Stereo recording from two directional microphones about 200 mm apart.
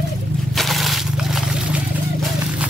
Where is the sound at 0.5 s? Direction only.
Centre (ahead or behind).